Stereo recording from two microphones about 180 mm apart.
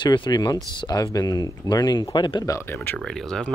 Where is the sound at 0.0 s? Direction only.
25° left (ahead or behind).